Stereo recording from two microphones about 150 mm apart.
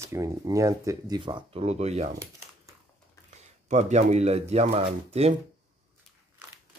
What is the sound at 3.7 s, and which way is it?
Speech, 50° right (ahead or behind).